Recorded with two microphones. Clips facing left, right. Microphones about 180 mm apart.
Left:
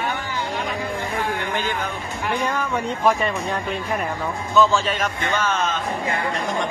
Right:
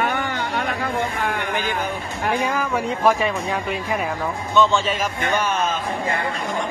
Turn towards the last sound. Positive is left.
turn(degrees=-15)  # may be behind; listen again after turning